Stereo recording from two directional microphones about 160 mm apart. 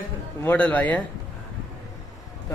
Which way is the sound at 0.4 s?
10° left (ahead or behind).